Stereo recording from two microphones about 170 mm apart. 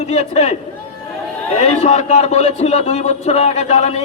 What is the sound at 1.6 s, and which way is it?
A man's voice, 35° left (ahead or behind).